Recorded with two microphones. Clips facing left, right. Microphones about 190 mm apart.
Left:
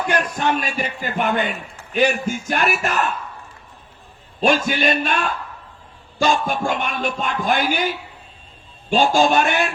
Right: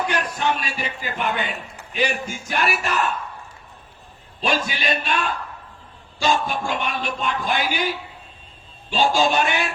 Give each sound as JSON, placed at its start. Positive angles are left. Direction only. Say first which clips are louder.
{"t": 0.1, "sound": "speech", "louder": "left 3 dB", "side_deg": 50}
{"t": 4.4, "sound": "speech", "louder": "left 6 dB", "side_deg": 45}